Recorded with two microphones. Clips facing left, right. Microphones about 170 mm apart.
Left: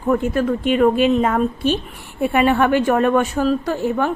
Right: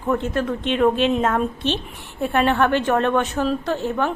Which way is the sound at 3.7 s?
10° left (ahead or behind).